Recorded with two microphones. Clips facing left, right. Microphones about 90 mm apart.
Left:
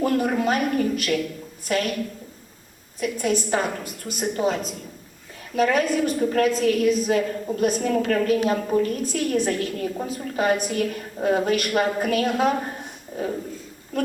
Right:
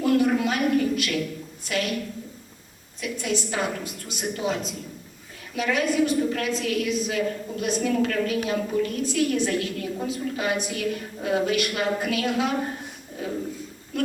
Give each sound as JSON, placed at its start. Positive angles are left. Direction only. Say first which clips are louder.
{"t": 0.0, "sound": "a woman's voice", "louder": "even", "side_deg": 40}
{"t": 3.0, "sound": "a woman's voice", "louder": "left 4 dB", "side_deg": 45}